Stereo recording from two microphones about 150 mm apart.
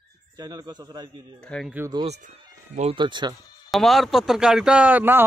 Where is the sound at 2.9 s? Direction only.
30° right (ahead or behind).